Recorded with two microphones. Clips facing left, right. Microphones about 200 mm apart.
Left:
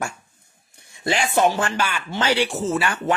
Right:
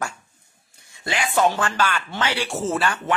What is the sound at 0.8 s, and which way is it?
Speech, 25° left (ahead or behind).